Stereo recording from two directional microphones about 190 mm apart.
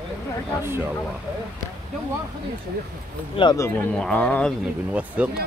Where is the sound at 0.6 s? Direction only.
10° right (ahead or behind).